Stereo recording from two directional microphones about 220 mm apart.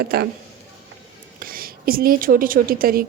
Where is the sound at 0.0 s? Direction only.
45° right (ahead or behind).